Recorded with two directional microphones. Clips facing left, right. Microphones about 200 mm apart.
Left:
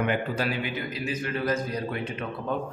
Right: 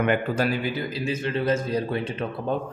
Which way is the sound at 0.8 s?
30° right (ahead or behind).